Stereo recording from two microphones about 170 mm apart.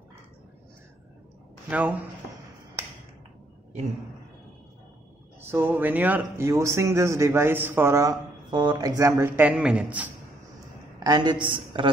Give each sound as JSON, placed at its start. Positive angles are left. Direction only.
{"t": 1.7, "sound": "speech", "side_deg": -10}
{"t": 5.4, "sound": "speech", "side_deg": -15}
{"t": 11.1, "sound": "a man's voice", "side_deg": -25}